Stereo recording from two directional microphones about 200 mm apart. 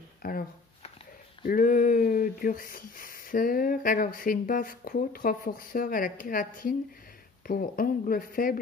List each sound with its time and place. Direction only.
0.2 s shuffling cards: 45° left (ahead or behind)
1.4 s speech: 45° left (ahead or behind)